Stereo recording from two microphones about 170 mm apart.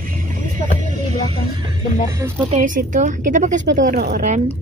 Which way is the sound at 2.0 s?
15° right (ahead or behind).